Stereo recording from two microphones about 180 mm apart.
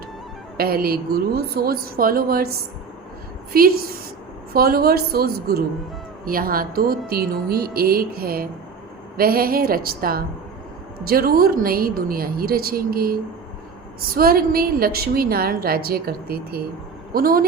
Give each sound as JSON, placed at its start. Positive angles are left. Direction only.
{"t": 0.5, "sound": "a woman's voice", "side_deg": -55}
{"t": 14.2, "sound": "a woman's voice", "side_deg": -55}